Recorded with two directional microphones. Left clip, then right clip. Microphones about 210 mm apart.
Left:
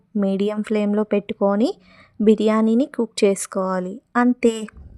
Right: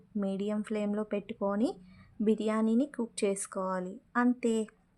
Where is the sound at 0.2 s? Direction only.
45° left (ahead or behind).